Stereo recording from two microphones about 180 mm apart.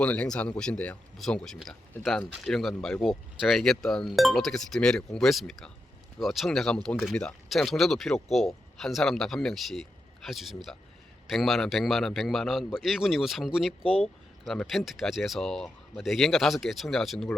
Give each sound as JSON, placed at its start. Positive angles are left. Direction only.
{"t": 0.0, "sound": "speech", "side_deg": 5}
{"t": 13.8, "sound": "speech", "side_deg": 35}
{"t": 14.4, "sound": "speech", "side_deg": 0}